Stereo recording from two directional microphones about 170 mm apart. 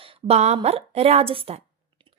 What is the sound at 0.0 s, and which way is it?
A woman's voice, 35° right (ahead or behind).